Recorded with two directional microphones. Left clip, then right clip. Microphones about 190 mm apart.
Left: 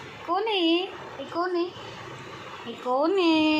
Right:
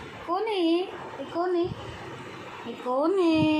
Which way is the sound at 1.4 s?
20° left (ahead or behind).